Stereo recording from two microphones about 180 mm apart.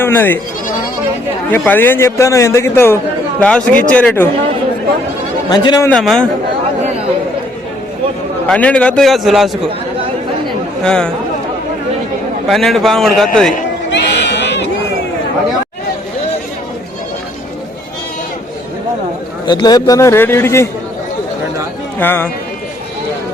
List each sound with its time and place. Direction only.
0.0 s a man's voice: 10° left (ahead or behind)
1.5 s a man's voice: 10° left (ahead or behind)
5.5 s a man's voice: 20° left (ahead or behind)
5.9 s a man's voice: 5° left (ahead or behind)
8.4 s a man's voice: 5° left (ahead or behind)
10.8 s a man's voice: 5° left (ahead or behind)
12.5 s a man's voice: centre (ahead or behind)
13.9 s a sound: 75° left (ahead or behind)
19.5 s a man's voice: 25° left (ahead or behind)
21.9 s a man's voice: 10° left (ahead or behind)